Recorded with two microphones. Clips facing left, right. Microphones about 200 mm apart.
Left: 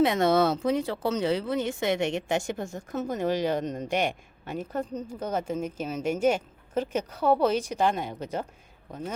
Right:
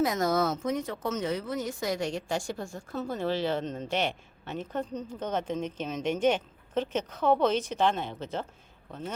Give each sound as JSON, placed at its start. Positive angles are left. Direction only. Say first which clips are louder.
{"t": 0.0, "sound": "speech", "louder": "left 4 dB", "side_deg": 30}